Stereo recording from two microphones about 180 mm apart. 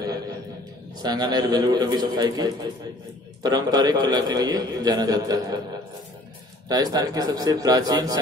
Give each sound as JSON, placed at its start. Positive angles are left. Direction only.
{"t": 1.0, "sound": "a man's voice", "side_deg": -20}
{"t": 6.7, "sound": "a man's voice", "side_deg": -20}